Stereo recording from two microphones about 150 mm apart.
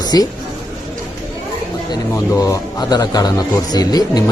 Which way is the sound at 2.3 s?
25° left (ahead or behind).